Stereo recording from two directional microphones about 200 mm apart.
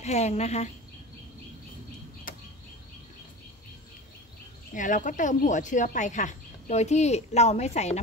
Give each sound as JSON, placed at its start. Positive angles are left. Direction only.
{"t": 0.0, "sound": "speech", "side_deg": 35}
{"t": 2.3, "sound": "a sound", "side_deg": 45}
{"t": 4.7, "sound": "speech", "side_deg": 40}